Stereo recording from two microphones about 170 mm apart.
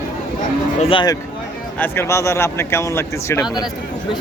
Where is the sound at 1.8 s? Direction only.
15° left (ahead or behind).